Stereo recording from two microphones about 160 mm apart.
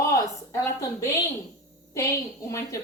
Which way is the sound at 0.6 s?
20° left (ahead or behind).